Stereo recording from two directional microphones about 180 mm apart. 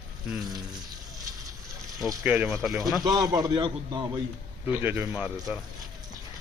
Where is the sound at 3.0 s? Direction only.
20° right (ahead or behind).